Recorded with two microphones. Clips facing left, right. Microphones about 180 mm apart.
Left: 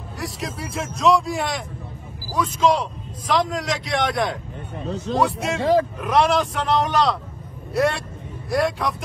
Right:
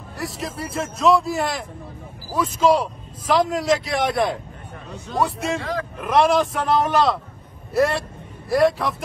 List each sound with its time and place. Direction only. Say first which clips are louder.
0.2 s a man's voice: right 1 dB; centre (ahead or behind)
5.6 s speech: left 9 dB; 30° left (ahead or behind)
5.9 s a man's voice: right 1 dB; centre (ahead or behind)